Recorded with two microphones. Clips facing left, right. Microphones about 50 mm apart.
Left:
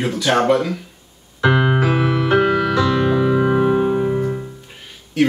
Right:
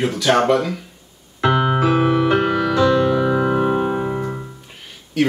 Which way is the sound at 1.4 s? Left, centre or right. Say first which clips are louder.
Even; centre.